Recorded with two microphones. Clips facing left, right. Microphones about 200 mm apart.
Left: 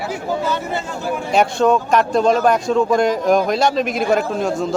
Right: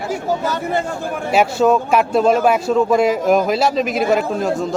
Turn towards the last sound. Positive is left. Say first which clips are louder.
# right 1 dB
turn(degrees=0)  # may be behind; listen again after turning